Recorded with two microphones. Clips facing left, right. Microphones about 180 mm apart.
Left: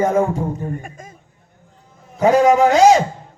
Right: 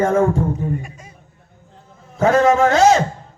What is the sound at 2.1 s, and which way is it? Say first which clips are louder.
Speech: left 1 dB; 15° left (ahead or behind).